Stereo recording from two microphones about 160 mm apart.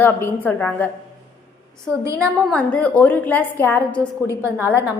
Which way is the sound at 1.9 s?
20° right (ahead or behind).